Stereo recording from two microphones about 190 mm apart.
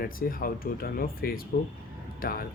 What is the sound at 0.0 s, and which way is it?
Speech, 50° left (ahead or behind).